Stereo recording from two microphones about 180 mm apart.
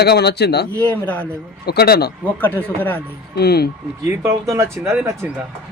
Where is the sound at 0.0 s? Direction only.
65° left (ahead or behind).